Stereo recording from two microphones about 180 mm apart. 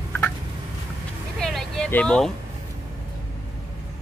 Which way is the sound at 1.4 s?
Centre (ahead or behind).